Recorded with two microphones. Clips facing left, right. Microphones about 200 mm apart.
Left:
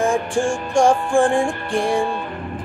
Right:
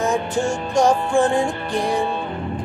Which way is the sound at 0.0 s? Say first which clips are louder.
Left 2 dB; 30° left (ahead or behind).